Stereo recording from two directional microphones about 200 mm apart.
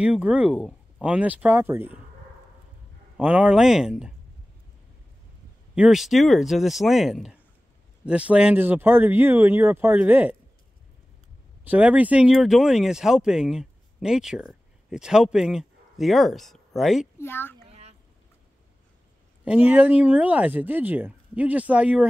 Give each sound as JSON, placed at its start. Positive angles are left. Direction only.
{"t": 0.0, "sound": "speech", "side_deg": -5}
{"t": 3.2, "sound": "speech", "side_deg": -5}
{"t": 5.8, "sound": "speech", "side_deg": 0}
{"t": 11.6, "sound": "speech", "side_deg": -10}
{"t": 17.2, "sound": "a child's voice", "side_deg": 10}
{"t": 17.6, "sound": "a sound", "side_deg": -35}
{"t": 19.4, "sound": "speech", "side_deg": -5}